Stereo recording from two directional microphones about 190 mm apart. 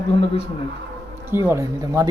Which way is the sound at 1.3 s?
15° right (ahead or behind).